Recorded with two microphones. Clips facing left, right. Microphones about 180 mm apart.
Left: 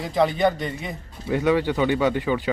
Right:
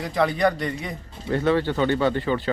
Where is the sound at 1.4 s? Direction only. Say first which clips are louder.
Left 1 dB; 10° left (ahead or behind).